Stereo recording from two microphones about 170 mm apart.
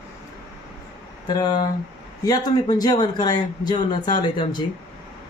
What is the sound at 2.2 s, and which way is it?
Speech, 20° left (ahead or behind).